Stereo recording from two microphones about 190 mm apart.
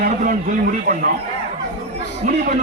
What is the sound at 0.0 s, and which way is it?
Speech, 45° right (ahead or behind).